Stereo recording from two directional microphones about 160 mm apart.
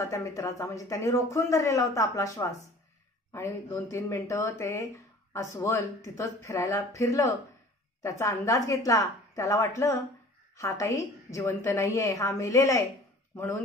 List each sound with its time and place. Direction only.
0.0 s speech: 20° left (ahead or behind)